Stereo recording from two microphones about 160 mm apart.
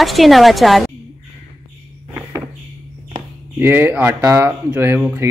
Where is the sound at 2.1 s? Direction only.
10° right (ahead or behind).